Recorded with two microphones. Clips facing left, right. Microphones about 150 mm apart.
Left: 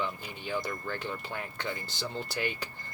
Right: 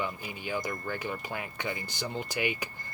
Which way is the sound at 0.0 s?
10° right (ahead or behind).